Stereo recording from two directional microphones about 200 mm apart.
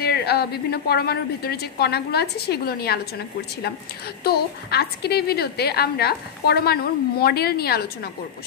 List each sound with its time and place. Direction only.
0.0 s a woman's voice: 55° left (ahead or behind)
4.2 s a woman's voice: 50° left (ahead or behind)